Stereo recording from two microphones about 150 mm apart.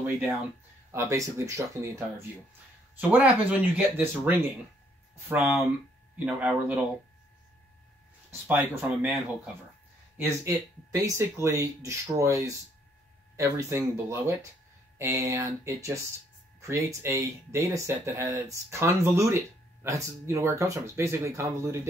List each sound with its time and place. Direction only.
0.9 s speech: 20° right (ahead or behind)
3.0 s speech: 10° right (ahead or behind)
5.3 s speech: 10° right (ahead or behind)
8.3 s speech: 10° right (ahead or behind)
10.1 s speech: 20° right (ahead or behind)